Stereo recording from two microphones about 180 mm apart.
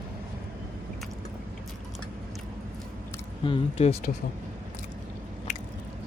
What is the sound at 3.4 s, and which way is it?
Speech, 30° left (ahead or behind).